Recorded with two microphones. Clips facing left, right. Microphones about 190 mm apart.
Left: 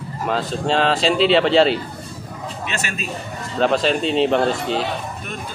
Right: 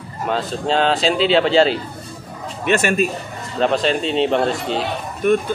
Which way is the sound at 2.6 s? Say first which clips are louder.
Right 13 dB; 55° right (ahead or behind).